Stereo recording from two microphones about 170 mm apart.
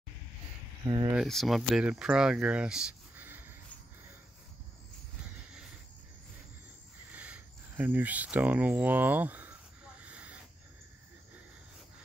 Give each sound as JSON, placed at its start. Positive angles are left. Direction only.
{"t": 0.8, "sound": "speech", "side_deg": -25}
{"t": 1.1, "sound": "speech", "side_deg": 0}
{"t": 7.1, "sound": "speech", "side_deg": -10}
{"t": 10.0, "sound": "a sound", "side_deg": -10}